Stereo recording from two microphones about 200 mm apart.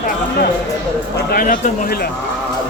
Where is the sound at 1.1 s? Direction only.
45° left (ahead or behind).